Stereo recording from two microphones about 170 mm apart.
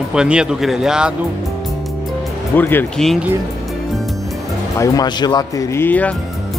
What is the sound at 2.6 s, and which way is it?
Speech, 10° left (ahead or behind).